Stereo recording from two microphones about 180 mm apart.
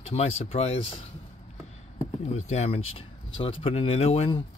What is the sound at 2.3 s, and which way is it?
Speech, 40° left (ahead or behind).